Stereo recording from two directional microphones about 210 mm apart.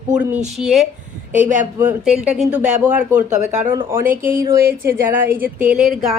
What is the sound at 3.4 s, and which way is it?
Speech, 35° right (ahead or behind).